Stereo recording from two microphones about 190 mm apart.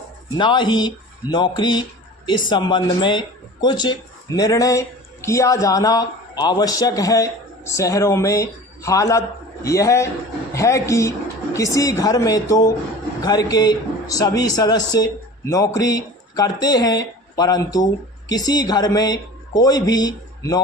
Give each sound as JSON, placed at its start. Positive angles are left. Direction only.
{"t": 0.3, "sound": "a man's voice", "side_deg": 25}